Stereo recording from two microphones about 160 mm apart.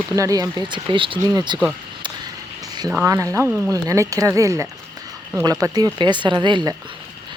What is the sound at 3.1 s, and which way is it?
Speech, 15° right (ahead or behind).